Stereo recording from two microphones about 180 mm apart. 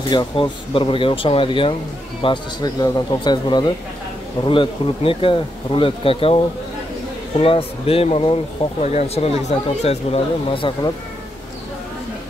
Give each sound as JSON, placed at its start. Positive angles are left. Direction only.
{"t": 0.1, "sound": "speech", "side_deg": 25}